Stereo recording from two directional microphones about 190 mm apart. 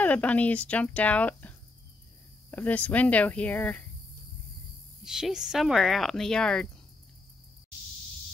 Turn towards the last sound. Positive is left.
turn(degrees=5)  # may be behind; listen again after turning